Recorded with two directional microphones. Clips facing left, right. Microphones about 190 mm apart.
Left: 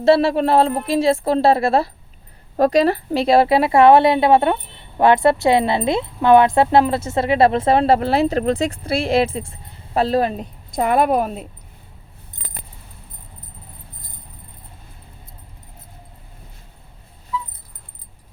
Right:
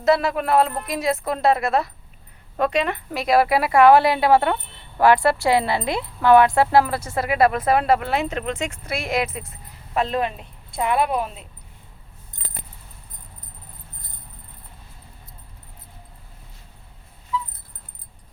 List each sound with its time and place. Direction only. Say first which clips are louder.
0.0 s speech: left 5 dB; 30° left (ahead or behind)